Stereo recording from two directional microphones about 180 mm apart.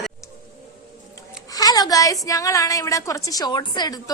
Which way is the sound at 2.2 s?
20° left (ahead or behind).